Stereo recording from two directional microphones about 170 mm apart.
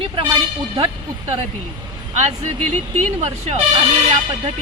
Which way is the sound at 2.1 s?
40° right (ahead or behind).